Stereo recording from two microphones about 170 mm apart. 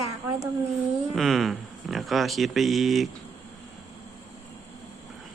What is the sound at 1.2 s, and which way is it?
Speech, centre (ahead or behind).